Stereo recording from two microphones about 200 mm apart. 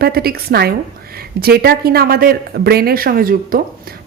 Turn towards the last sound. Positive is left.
turn(degrees=-45)  # may be behind; listen again after turning